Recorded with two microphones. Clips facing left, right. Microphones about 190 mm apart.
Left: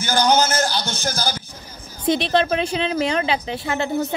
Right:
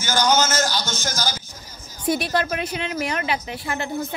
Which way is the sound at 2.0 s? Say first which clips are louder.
Left 4 dB; 25° left (ahead or behind).